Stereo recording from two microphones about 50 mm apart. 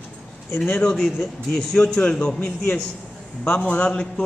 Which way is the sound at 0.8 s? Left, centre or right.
Centre.